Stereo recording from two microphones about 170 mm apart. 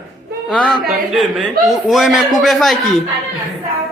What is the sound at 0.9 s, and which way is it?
A man's voice, centre (ahead or behind).